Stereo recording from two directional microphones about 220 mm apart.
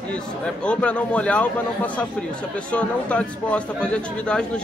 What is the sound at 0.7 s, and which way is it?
A man's voice, 5° left (ahead or behind).